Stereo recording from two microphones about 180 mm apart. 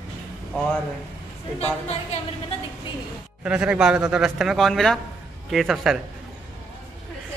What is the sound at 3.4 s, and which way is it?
A man's voice, 5° right (ahead or behind).